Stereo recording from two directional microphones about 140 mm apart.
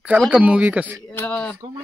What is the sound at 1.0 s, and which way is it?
Speech, 10° left (ahead or behind).